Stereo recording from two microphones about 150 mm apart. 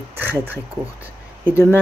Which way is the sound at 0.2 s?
15° right (ahead or behind).